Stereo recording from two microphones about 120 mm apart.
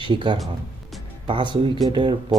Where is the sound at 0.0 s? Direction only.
45° right (ahead or behind).